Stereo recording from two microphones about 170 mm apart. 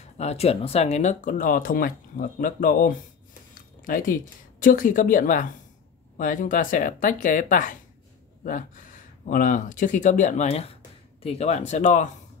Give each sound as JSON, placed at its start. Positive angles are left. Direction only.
{"t": 0.0, "sound": "speech", "side_deg": 40}